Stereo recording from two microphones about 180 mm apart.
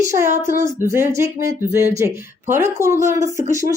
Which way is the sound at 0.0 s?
15° right (ahead or behind).